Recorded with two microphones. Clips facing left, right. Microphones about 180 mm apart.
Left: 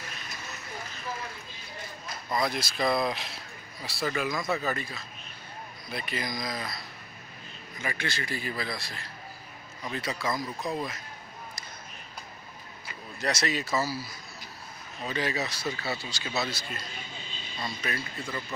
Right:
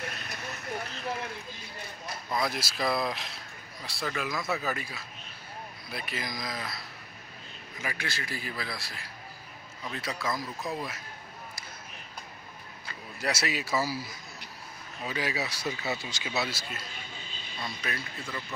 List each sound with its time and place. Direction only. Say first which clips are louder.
0.0 s a sound: right 4 dB; 60° right (ahead or behind)
2.3 s a man's voice: left 2 dB; centre (ahead or behind)
7.8 s a man's voice: left 3 dB; 5° right (ahead or behind)
13.2 s a man's voice: left 2 dB; 10° right (ahead or behind)